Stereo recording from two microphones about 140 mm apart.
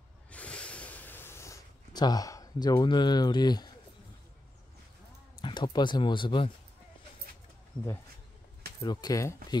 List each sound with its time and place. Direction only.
0.3 s snort: 10° left (ahead or behind); by 3.7 s 30° left (ahead or behind)
5.4 s speech: 35° left (ahead or behind)
8.8 s speech: 30° left (ahead or behind)